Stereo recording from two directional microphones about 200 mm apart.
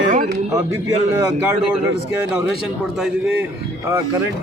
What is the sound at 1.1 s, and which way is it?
Speech, 10° right (ahead or behind).